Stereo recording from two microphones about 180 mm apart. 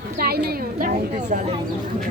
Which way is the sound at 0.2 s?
60° right (ahead or behind).